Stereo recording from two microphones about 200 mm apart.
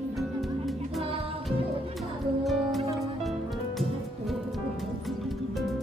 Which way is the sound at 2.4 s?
Centre (ahead or behind).